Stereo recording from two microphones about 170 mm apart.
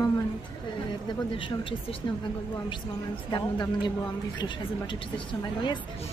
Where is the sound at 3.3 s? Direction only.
25° left (ahead or behind).